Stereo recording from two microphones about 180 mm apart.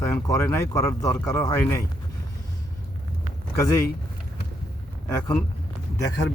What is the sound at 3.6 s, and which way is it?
Speech, 15° left (ahead or behind).